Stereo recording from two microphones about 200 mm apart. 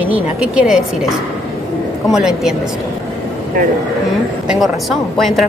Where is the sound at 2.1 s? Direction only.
5° right (ahead or behind).